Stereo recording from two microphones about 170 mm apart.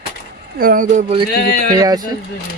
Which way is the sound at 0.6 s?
55° right (ahead or behind).